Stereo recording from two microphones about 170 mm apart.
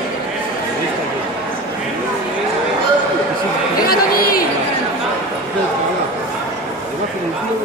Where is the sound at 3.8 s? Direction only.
60° left (ahead or behind).